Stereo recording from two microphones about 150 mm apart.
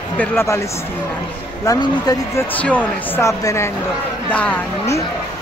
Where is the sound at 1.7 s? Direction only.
25° left (ahead or behind).